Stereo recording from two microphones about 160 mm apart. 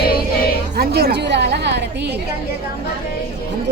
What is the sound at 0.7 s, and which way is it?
A woman's voice, 80° right.